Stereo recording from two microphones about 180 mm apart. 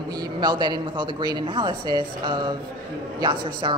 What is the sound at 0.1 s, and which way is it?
Speech, 25° right (ahead or behind).